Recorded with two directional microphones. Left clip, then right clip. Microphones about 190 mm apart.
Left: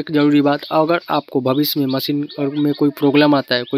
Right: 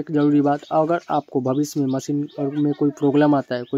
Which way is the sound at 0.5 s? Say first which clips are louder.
Left 3 dB; 15° left (ahead or behind).